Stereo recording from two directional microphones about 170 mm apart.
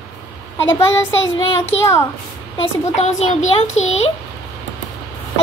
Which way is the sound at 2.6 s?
35° left (ahead or behind).